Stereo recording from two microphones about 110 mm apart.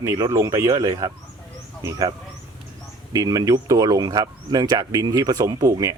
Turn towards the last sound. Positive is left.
turn(degrees=-35)  # may be behind; listen again after turning